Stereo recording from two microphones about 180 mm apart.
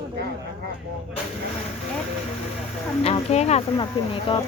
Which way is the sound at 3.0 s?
35° left (ahead or behind).